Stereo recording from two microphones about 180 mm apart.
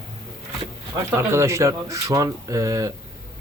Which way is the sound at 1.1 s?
15° right (ahead or behind).